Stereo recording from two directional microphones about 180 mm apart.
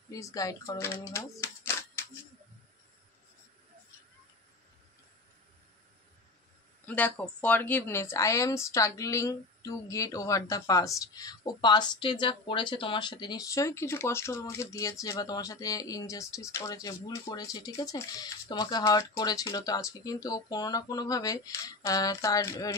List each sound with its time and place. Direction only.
0.1 s speech: 20° left (ahead or behind)
6.9 s speech: 10° left (ahead or behind)